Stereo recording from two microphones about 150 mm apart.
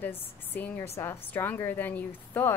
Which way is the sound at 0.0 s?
15° left (ahead or behind).